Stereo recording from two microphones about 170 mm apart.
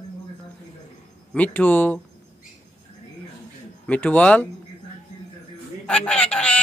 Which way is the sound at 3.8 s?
10° left (ahead or behind).